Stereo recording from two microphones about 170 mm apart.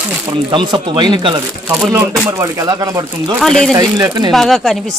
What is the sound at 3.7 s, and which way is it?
Chopping, 20° right (ahead or behind).